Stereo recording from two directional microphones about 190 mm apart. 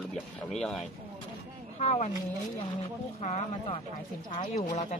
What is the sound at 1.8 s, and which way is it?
Speech, 35° left (ahead or behind).